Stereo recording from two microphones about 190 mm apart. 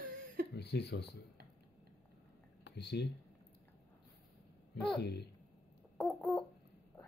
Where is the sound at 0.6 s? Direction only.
60° left (ahead or behind).